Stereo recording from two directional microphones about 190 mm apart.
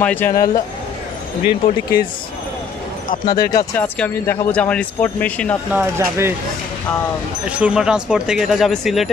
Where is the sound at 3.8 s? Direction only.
10° left (ahead or behind).